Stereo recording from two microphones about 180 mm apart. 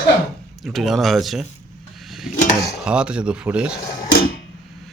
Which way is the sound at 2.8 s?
5° right (ahead or behind).